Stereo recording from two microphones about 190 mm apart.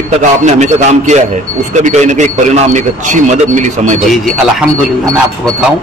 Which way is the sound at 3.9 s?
Centre (ahead or behind).